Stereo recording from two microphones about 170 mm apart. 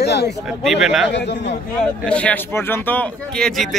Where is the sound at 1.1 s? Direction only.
90° left.